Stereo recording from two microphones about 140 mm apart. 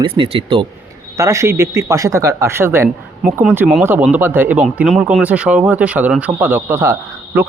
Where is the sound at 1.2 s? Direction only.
20° right (ahead or behind).